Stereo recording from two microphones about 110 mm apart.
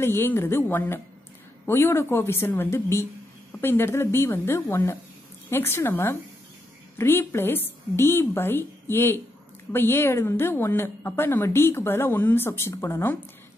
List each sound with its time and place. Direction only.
0.0 s a woman's voice: 20° left (ahead or behind)